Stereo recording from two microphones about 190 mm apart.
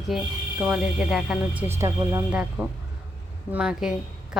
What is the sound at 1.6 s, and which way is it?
Speech, 15° right (ahead or behind).